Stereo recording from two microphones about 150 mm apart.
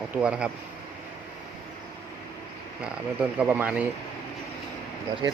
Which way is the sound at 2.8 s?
10° right (ahead or behind).